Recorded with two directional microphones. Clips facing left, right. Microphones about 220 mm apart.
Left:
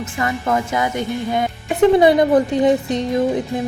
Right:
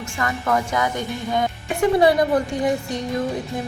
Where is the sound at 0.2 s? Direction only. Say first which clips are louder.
Left 2 dB; 20° left (ahead or behind).